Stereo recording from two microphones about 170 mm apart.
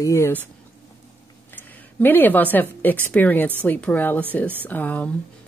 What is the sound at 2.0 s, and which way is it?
Speech, 10° left (ahead or behind).